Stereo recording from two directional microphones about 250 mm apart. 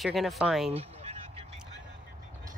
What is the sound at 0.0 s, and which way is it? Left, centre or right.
Speech, centre.